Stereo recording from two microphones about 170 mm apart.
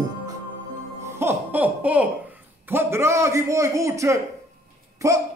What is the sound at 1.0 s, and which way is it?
A man's voice, 15° right (ahead or behind).